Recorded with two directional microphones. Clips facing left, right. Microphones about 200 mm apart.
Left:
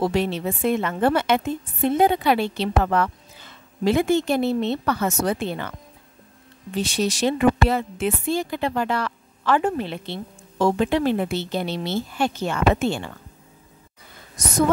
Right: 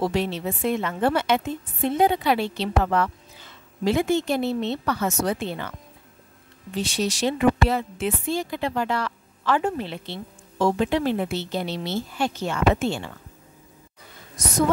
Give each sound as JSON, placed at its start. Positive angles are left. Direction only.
{"t": 0.1, "sound": "speech", "side_deg": 55}
{"t": 6.8, "sound": "speech", "side_deg": 55}